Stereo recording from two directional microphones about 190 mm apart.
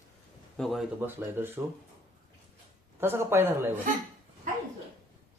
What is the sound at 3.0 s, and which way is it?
Speech, 15° right (ahead or behind).